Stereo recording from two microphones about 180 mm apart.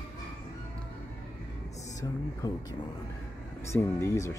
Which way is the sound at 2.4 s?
20° left (ahead or behind).